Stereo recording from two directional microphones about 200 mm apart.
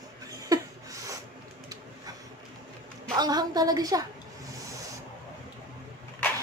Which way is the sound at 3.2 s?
20° right (ahead or behind).